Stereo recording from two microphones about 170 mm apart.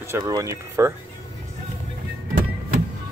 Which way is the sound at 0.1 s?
20° right (ahead or behind).